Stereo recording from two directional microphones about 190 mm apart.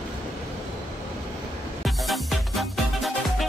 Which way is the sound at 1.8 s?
Centre (ahead or behind).